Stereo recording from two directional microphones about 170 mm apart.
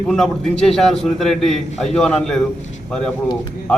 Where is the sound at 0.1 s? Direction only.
5° left (ahead or behind).